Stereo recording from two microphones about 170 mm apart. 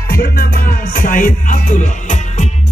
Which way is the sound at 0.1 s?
60° left (ahead or behind).